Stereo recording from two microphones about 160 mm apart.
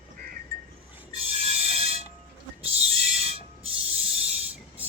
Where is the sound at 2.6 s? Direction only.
40° right (ahead or behind).